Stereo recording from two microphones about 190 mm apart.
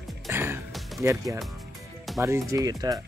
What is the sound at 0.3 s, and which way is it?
Music, 10° right (ahead or behind).